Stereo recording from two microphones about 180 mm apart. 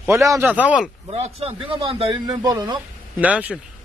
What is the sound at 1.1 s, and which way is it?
Speech, 35° right (ahead or behind).